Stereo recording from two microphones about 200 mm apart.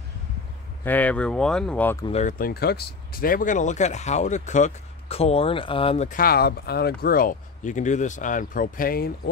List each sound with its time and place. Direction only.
0.8 s speech: 10° left (ahead or behind)
2.0 s speech: 30° left (ahead or behind)
2.3 s speech: 50° left (ahead or behind); by 6.0 s 25° left (ahead or behind)
6.0 s speech: 45° left (ahead or behind)